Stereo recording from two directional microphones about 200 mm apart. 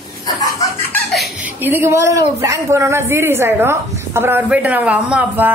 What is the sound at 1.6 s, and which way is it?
A woman's voice, 10° right (ahead or behind).